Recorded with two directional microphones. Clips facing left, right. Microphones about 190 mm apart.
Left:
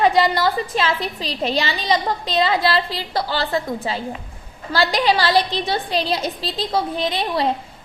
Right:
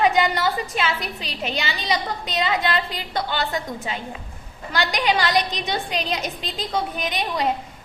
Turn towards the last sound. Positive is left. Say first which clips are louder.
# left 4 dB
turn(degrees=30)  # may be behind; listen again after turning